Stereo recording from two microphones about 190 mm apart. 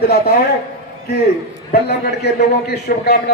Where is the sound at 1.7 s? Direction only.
60° left (ahead or behind).